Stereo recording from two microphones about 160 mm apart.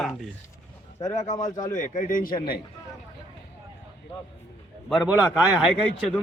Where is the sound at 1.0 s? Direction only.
20° left (ahead or behind).